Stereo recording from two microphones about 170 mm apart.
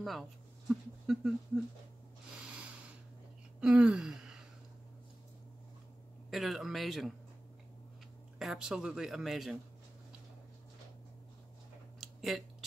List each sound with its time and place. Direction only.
0.0 s speech: centre (ahead or behind)
3.6 s gasp: 5° right (ahead or behind)
6.3 s speech: centre (ahead or behind)
8.4 s speech: centre (ahead or behind)
12.0 s a sound: centre (ahead or behind)